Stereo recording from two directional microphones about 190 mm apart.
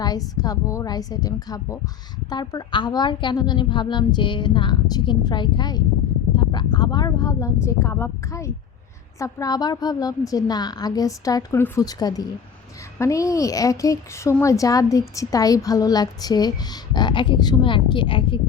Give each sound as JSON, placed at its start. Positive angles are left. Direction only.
{"t": 0.0, "sound": "a woman's voice", "side_deg": 20}